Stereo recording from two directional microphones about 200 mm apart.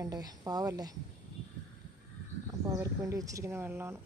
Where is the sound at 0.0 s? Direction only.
20° right (ahead or behind).